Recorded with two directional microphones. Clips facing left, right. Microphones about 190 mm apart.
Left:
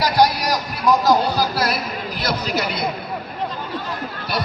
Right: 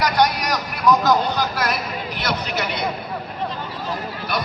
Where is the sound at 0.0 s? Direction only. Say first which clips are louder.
Left 2 dB; 30° left (ahead or behind).